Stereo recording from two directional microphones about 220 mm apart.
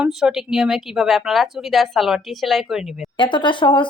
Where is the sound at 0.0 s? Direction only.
Centre (ahead or behind).